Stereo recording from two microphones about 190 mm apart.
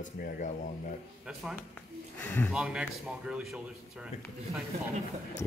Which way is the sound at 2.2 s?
10° left (ahead or behind).